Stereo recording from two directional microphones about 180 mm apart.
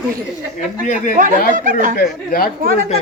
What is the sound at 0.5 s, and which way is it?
Speech, 45° left (ahead or behind).